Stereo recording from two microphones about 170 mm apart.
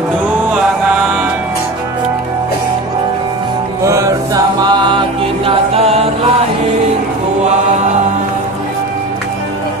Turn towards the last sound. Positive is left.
turn(degrees=-40)  # may be behind; listen again after turning